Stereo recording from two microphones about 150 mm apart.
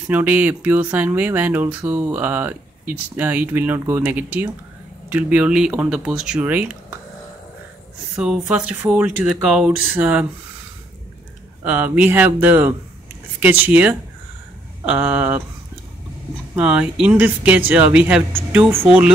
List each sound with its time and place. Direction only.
0.0 s speech: 10° right (ahead or behind)
8.2 s speech: 10° right (ahead or behind)
11.6 s speech: 10° right (ahead or behind)
16.5 s speech: 5° right (ahead or behind)